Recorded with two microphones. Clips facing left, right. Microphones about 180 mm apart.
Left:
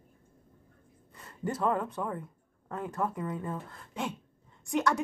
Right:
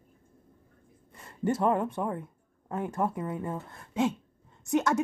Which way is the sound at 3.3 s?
25° right (ahead or behind).